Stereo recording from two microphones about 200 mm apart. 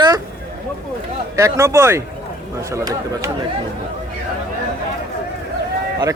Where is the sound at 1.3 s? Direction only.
15° right (ahead or behind).